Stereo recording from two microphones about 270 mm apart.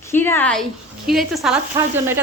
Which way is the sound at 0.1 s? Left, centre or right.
Centre.